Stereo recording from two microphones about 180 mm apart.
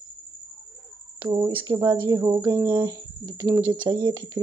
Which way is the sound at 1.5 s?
25° right (ahead or behind).